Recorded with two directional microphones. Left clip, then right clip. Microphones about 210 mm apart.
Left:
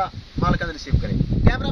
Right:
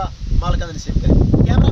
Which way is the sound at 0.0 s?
5° left (ahead or behind).